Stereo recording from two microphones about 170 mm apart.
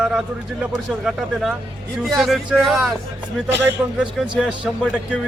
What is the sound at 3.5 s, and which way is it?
Speech, 90° right.